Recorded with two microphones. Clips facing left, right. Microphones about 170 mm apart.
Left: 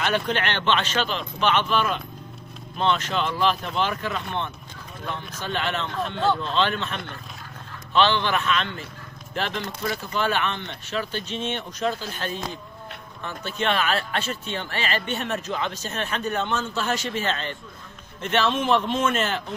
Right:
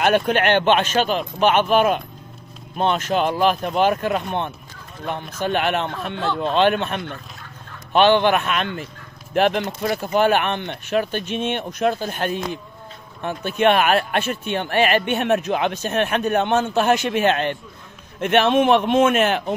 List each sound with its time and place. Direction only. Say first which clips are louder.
0.0 s a man's voice: right 7 dB; 50° right (ahead or behind)